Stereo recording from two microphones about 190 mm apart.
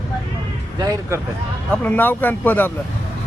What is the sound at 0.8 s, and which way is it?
Speech, 20° right (ahead or behind).